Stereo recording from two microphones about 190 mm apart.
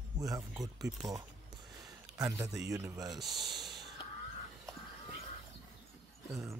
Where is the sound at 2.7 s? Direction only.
15° right (ahead or behind).